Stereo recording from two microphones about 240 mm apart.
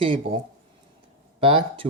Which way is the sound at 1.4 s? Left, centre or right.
Right.